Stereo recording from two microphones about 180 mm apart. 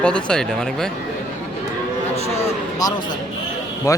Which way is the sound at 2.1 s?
35° left (ahead or behind).